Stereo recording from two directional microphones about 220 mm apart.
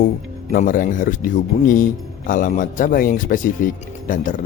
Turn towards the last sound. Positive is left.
turn(degrees=35)  # may be behind; listen again after turning